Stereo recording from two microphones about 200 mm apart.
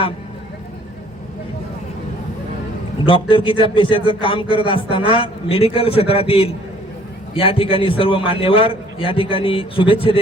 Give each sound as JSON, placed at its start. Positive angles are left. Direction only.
{"t": 3.1, "sound": "a man's voice", "side_deg": 25}